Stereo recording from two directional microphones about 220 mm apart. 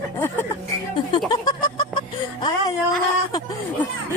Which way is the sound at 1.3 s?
20° left (ahead or behind).